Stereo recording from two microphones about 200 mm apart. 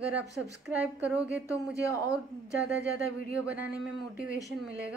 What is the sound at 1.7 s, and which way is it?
Speech, 15° left (ahead or behind).